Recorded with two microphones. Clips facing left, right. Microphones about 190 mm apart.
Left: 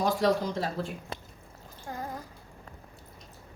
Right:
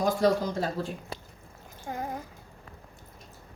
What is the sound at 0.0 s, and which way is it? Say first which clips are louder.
Speech: right 1 dB; 45° right (ahead or behind).